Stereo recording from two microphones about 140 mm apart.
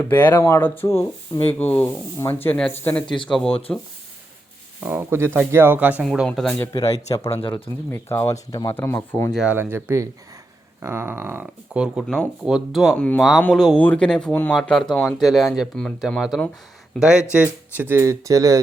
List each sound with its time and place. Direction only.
0.0 s speech: 15° left (ahead or behind)
4.8 s speech: 15° right (ahead or behind)
6.1 s speech: centre (ahead or behind)
6.7 s speech: 25° left (ahead or behind)
9.3 s speech: 5° right (ahead or behind)
9.6 s speech: 15° right (ahead or behind)
12.0 s speech: centre (ahead or behind); by 18.6 s 25° right (ahead or behind)